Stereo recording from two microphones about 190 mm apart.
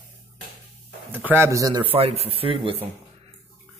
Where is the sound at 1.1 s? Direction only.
10° right (ahead or behind); by 2.8 s 30° right (ahead or behind).